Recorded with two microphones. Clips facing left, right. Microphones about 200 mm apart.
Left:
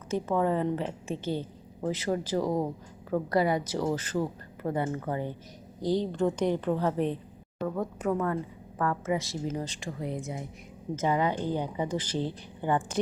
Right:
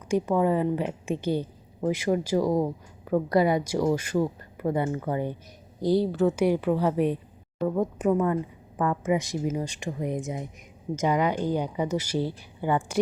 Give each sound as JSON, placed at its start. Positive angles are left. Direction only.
{"t": 0.1, "sound": "a woman's voice", "side_deg": -10}